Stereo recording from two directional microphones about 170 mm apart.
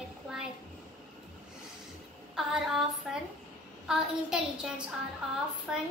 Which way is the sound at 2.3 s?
Centre (ahead or behind).